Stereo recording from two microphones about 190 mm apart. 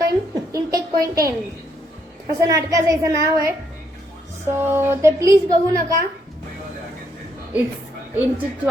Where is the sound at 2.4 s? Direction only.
15° right (ahead or behind).